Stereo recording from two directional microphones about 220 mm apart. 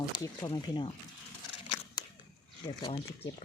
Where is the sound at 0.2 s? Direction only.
20° left (ahead or behind).